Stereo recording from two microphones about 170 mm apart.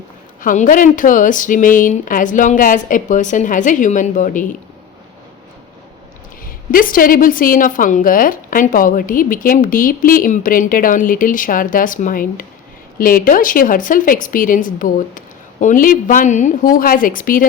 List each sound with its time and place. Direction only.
0.4 s a woman's voice: 50° left (ahead or behind)
6.7 s a woman's voice: 55° left (ahead or behind)